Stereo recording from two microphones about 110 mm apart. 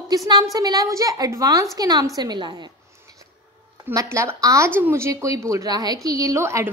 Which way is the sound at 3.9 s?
25° right (ahead or behind).